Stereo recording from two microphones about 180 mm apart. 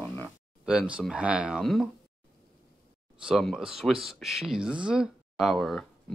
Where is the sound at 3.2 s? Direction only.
Centre (ahead or behind).